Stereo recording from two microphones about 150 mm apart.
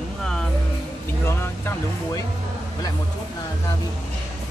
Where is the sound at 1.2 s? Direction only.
15° left (ahead or behind).